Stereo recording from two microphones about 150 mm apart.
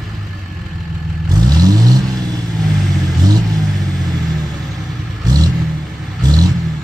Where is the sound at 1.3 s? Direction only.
25° right (ahead or behind).